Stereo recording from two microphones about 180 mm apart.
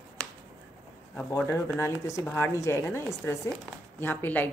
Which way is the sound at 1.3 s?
10° left (ahead or behind).